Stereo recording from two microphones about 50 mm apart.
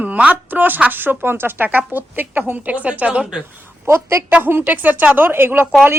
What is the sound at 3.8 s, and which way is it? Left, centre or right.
Speech, right.